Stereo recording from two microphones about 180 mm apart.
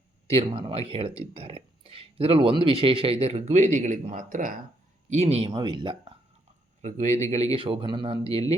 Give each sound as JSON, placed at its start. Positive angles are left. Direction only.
{"t": 0.3, "sound": "speech", "side_deg": -35}
{"t": 6.8, "sound": "speech", "side_deg": -40}